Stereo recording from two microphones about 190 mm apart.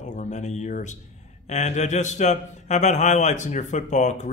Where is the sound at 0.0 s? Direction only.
40° left (ahead or behind).